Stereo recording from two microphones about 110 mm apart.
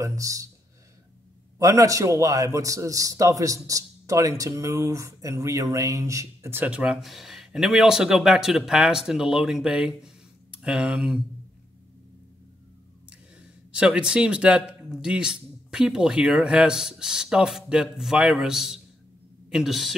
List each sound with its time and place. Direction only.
0.0 s a man's voice: 30° right (ahead or behind)
1.6 s a man's voice: 30° right (ahead or behind); by 11.2 s 10° right (ahead or behind)
13.4 s a woman's voice: 10° right (ahead or behind)